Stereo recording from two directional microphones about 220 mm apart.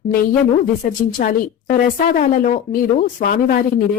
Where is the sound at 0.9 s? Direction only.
40° left (ahead or behind).